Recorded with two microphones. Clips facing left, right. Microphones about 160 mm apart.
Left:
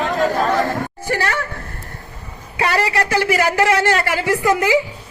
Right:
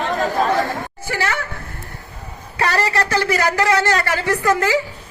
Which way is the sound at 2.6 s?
15° left (ahead or behind).